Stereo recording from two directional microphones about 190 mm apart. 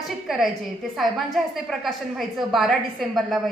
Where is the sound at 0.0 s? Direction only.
Centre (ahead or behind).